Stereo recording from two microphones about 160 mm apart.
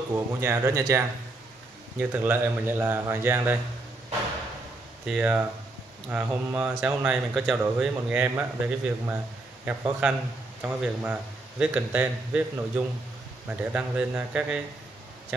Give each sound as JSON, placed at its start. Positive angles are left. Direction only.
{"t": 0.4, "sound": "speech", "side_deg": -15}
{"t": 5.0, "sound": "speech", "side_deg": -5}